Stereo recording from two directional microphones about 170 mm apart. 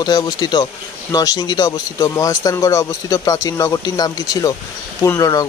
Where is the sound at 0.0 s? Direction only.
25° left (ahead or behind).